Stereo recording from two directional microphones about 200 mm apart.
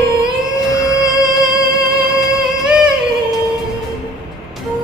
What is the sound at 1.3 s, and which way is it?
Music, centre (ahead or behind).